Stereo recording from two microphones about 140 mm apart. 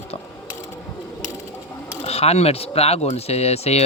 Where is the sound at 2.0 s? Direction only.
45° left (ahead or behind).